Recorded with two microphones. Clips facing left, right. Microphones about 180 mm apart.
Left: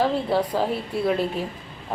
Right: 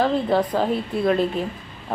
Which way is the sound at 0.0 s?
10° left (ahead or behind).